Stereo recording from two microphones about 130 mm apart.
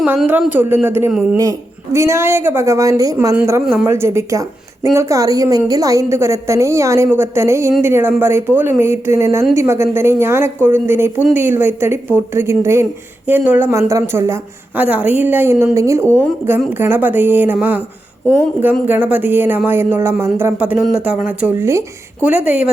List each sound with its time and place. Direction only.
0.0 s a woman's voice: 10° right (ahead or behind)
21.4 s a woman's voice: 20° right (ahead or behind)
22.2 s a woman's voice: 10° right (ahead or behind)